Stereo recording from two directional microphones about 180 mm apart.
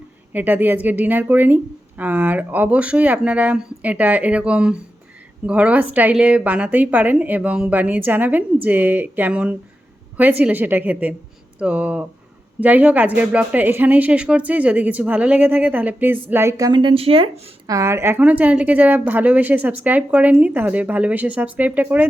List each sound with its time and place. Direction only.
0.3 s a woman's voice: 10° right (ahead or behind); by 17.5 s 30° right (ahead or behind)
17.7 s speech: 15° right (ahead or behind)